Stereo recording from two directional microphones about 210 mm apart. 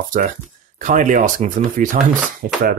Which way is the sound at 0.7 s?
40° right (ahead or behind).